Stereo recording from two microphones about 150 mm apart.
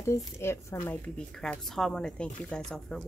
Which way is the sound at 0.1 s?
20° left (ahead or behind).